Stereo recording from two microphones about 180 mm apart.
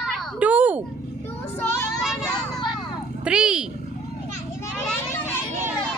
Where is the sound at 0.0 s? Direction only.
Centre (ahead or behind).